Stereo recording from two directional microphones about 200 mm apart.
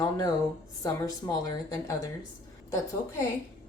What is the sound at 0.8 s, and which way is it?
Speech, 15° left (ahead or behind).